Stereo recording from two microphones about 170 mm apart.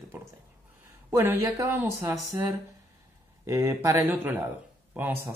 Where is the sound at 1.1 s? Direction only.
15° right (ahead or behind).